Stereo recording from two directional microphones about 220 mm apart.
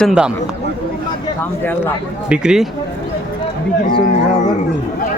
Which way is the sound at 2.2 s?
5° right (ahead or behind).